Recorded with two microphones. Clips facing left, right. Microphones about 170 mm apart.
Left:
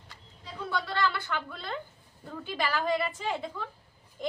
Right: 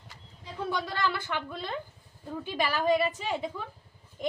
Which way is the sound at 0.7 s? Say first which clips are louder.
Left 1 dB; 20° right (ahead or behind).